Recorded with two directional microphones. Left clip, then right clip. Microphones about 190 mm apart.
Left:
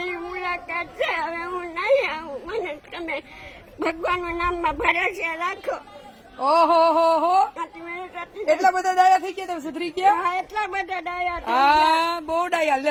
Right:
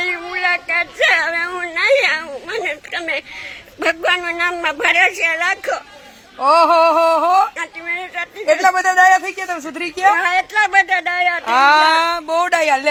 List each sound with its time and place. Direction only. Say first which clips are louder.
0.0 s a sound: right 9 dB; 5° left (ahead or behind)
3.8 s a woman's voice: right 7 dB; 5° left (ahead or behind)
6.4 s a woman's voice: right 6 dB; 20° right (ahead or behind)
7.5 s speech: right 8 dB; 5° left (ahead or behind)
8.4 s a woman's voice: right 5 dB; 20° right (ahead or behind)
10.2 s a woman's voice: right 9 dB; 5° left (ahead or behind)
11.4 s speech: right 5 dB; 15° right (ahead or behind)